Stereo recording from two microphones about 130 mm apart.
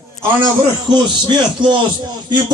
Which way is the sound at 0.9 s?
35° right (ahead or behind).